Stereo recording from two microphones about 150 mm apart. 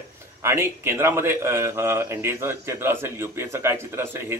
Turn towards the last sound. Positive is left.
turn(degrees=-15)  # may be behind; listen again after turning